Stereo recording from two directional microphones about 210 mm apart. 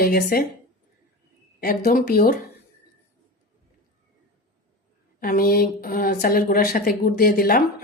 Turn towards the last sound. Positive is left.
turn(degrees=45)  # may be behind; listen again after turning